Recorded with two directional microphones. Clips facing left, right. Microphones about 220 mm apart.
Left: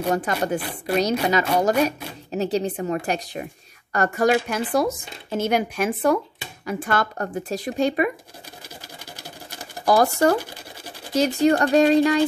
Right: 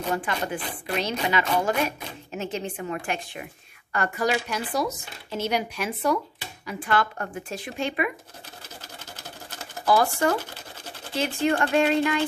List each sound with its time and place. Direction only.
0.1 s speech: 40° left (ahead or behind)
0.6 s a woman's voice: 10° left (ahead or behind)
1.2 s speech: 40° left (ahead or behind)
8.6 s a sound: 10° left (ahead or behind)
9.8 s speech: 40° left (ahead or behind)
10.3 s sewing machine: 10° left (ahead or behind)
11.1 s speech: 40° left (ahead or behind)